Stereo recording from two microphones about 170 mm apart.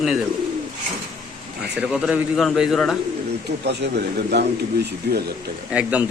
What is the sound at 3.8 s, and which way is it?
A man's voice, 75° right (ahead or behind).